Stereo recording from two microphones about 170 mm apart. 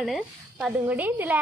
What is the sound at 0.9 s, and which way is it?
Speech, 10° right (ahead or behind).